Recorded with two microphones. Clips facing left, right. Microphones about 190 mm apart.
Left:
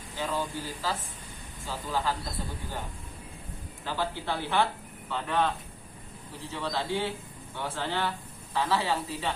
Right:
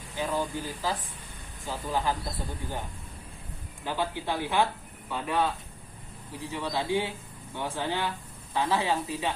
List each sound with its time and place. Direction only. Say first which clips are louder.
0.2 s speech: right 2 dB; 15° right (ahead or behind)
3.8 s speech: right 1 dB; 15° right (ahead or behind)